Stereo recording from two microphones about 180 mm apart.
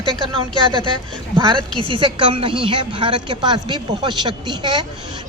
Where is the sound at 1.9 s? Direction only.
25° right (ahead or behind).